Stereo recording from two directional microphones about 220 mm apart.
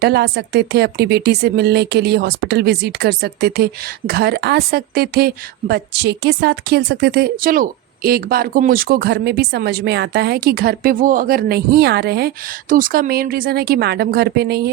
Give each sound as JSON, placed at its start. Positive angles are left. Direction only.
{"t": 0.0, "sound": "speech", "side_deg": -45}